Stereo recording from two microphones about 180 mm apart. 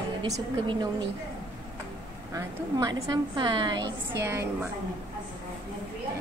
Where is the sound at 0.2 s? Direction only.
25° right (ahead or behind).